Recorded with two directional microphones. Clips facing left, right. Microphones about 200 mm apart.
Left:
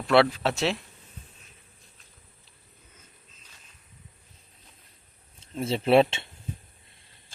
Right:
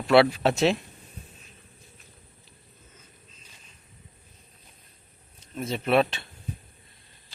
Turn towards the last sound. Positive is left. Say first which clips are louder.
# left 3 dB
turn(degrees=25)  # may be behind; listen again after turning